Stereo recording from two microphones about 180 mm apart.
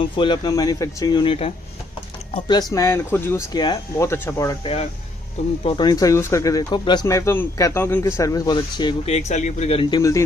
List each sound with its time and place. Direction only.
0.0 s speech: 25° left (ahead or behind)
5.6 s speech: 25° left (ahead or behind)